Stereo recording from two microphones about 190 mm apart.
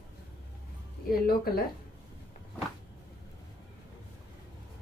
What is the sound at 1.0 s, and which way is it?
Speech, 55° left (ahead or behind).